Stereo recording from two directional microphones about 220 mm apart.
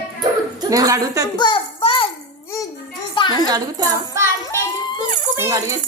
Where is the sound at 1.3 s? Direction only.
20° left (ahead or behind).